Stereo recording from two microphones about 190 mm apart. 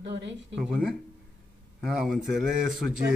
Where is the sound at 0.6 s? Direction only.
5° right (ahead or behind).